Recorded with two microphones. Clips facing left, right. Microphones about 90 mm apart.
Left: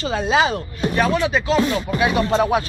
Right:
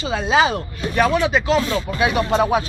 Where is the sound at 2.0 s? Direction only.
15° right (ahead or behind).